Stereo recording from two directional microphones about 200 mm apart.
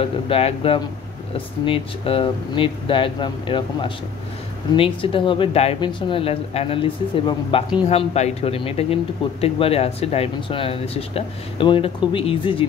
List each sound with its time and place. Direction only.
0.0 s speech: 30° left (ahead or behind)